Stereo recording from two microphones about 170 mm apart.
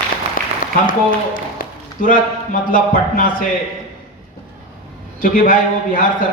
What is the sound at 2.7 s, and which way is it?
Speech, 55° left (ahead or behind).